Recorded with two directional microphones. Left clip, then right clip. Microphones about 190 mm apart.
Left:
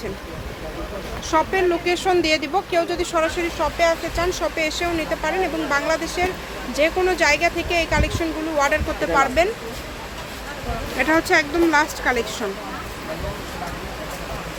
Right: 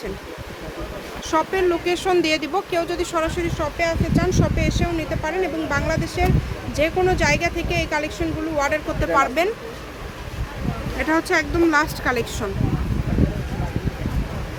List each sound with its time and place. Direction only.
1.3 s speech: 5° right (ahead or behind)
10.9 s speech: 5° left (ahead or behind)